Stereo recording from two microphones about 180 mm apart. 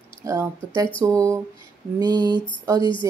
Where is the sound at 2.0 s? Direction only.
20° right (ahead or behind).